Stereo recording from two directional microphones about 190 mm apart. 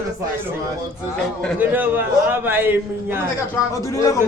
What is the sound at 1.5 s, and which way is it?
A man's voice, 10° right (ahead or behind).